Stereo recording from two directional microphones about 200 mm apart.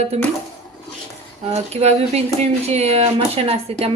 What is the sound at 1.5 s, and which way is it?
Speech, 30° right (ahead or behind).